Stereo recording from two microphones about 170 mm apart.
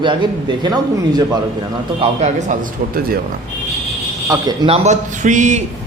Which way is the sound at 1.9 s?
40° right (ahead or behind).